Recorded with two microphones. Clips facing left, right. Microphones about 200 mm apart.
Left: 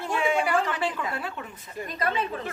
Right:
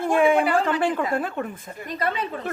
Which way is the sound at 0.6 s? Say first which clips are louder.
Right 6 dB; 50° right (ahead or behind).